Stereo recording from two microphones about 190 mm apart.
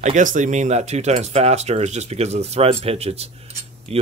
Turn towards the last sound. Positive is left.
turn(degrees=-30)  # may be behind; listen again after turning